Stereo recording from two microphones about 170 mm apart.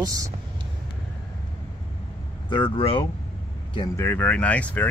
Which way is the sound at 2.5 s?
30° left (ahead or behind).